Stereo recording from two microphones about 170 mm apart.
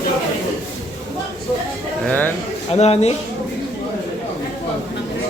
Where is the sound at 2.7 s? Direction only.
40° left (ahead or behind).